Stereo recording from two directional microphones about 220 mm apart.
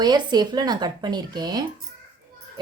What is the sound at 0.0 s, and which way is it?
Speech, 20° right (ahead or behind).